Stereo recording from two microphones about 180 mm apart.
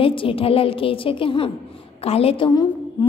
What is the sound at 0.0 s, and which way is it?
A woman's voice, 30° left (ahead or behind).